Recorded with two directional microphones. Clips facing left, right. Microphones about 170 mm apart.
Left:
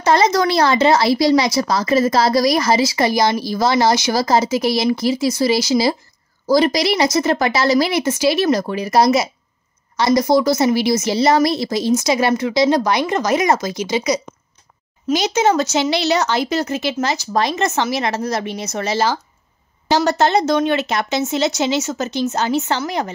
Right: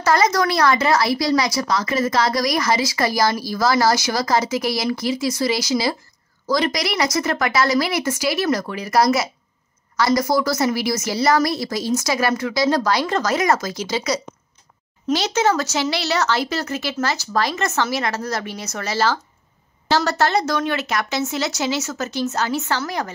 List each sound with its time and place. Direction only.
0.0 s speech: 25° left (ahead or behind)